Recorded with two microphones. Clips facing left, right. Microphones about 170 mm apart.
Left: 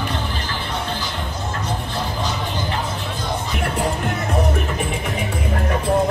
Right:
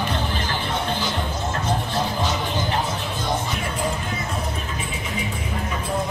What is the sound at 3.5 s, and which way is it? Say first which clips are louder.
Music: left 4 dB; 65° left (ahead or behind).